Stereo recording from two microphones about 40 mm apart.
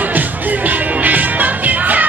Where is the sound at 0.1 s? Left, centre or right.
Right.